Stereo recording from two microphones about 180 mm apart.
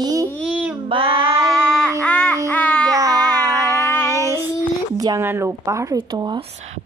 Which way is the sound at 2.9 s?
20° right (ahead or behind).